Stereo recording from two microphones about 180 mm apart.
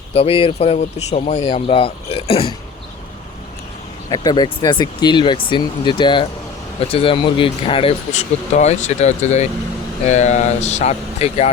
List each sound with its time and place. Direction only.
0.1 s speech: 30° left (ahead or behind)
4.1 s speech: 20° left (ahead or behind)